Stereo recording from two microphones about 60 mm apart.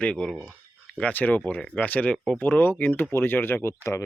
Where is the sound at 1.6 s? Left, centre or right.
Centre; by 3.7 s left.